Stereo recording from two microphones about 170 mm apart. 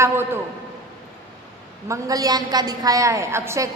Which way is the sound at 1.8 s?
20° right (ahead or behind).